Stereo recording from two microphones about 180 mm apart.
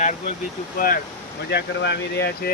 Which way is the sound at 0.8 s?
55° left (ahead or behind).